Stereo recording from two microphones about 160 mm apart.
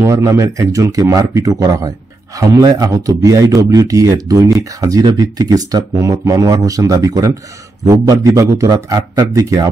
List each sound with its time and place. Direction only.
0.0 s speech: 15° right (ahead or behind)